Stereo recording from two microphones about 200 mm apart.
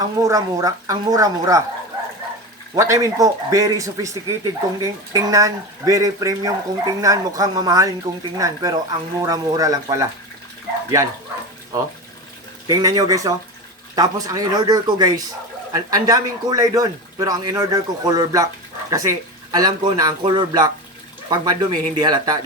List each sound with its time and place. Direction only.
0.0 s speech: 15° right (ahead or behind)
2.7 s speech: 15° right (ahead or behind)
12.6 s speech: 20° right (ahead or behind)